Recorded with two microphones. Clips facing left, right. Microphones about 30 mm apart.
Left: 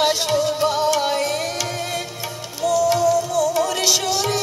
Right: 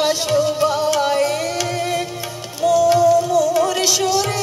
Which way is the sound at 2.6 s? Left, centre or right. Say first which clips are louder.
Right 4 dB; right.